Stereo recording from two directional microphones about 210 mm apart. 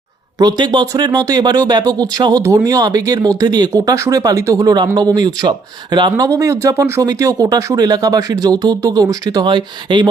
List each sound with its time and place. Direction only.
0.3 s speech: 20° right (ahead or behind)